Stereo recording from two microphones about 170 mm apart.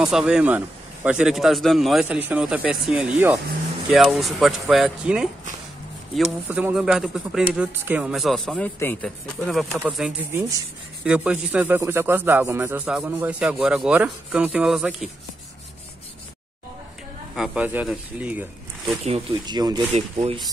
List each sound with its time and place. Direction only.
0.0 s a man's voice: 5° right (ahead or behind)
17.4 s speech: 5° right (ahead or behind)
19.4 s speech: 25° right (ahead or behind)
19.9 s speech: 40° right (ahead or behind)